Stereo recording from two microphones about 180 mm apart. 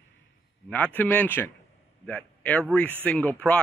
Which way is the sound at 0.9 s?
10° left (ahead or behind).